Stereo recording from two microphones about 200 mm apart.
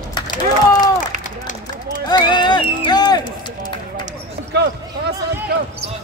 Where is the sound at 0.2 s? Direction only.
20° left (ahead or behind).